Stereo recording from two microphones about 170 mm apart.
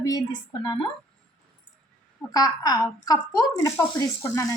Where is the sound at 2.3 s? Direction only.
20° left (ahead or behind).